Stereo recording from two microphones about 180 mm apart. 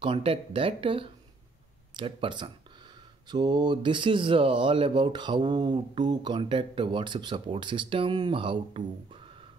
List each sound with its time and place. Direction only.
0.0 s speech: 30° right (ahead or behind)